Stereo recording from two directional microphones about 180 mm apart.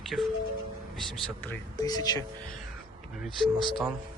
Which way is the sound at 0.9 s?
5° left (ahead or behind).